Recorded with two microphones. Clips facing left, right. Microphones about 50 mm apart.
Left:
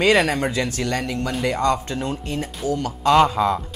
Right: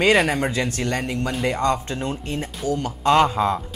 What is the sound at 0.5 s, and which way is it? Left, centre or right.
Speech, right.